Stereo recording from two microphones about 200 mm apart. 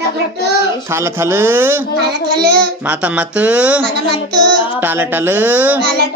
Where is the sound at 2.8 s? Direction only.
5° right (ahead or behind).